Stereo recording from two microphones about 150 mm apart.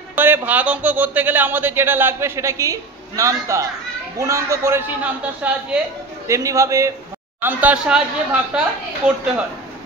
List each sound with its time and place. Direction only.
0.1 s a man's voice: 15° right (ahead or behind)
6.2 s a man's voice: 20° right (ahead or behind)
7.4 s a man's voice: 10° right (ahead or behind)